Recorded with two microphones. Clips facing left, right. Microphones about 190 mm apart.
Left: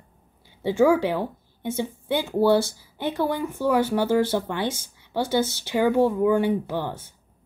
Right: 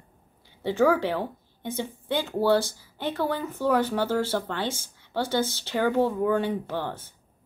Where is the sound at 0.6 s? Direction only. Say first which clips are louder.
Left 3 dB; 10° left (ahead or behind).